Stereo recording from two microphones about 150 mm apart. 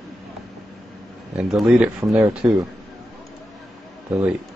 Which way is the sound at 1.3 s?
5° right (ahead or behind).